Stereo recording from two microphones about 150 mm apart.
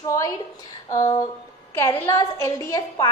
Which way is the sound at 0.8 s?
20° left (ahead or behind).